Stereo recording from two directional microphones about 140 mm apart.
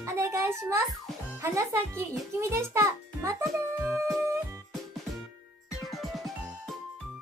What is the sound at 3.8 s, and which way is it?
Music, centre (ahead or behind).